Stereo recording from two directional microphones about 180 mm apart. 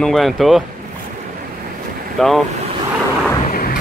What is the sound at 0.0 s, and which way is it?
Speech, centre (ahead or behind).